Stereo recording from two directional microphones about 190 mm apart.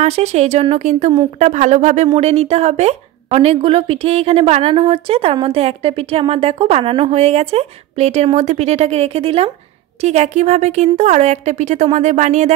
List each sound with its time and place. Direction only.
0.0 s a woman's voice: 35° right (ahead or behind)